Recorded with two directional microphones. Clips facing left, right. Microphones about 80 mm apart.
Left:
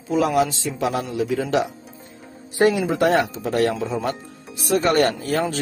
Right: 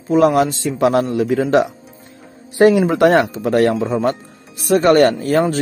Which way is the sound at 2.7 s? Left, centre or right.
Right.